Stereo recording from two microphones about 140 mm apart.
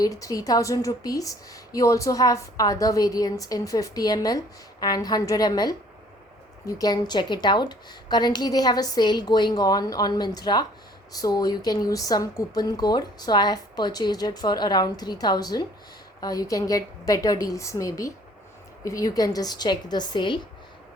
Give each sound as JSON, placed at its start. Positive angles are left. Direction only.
{"t": 0.0, "sound": "a woman's voice", "side_deg": 25}